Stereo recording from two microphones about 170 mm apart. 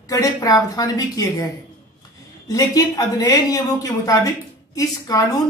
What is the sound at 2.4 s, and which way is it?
Speech, 20° left (ahead or behind).